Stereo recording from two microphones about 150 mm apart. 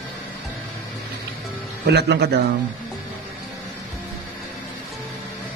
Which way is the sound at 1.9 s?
90° right.